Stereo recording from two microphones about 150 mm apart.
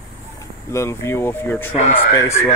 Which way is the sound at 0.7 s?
20° left (ahead or behind).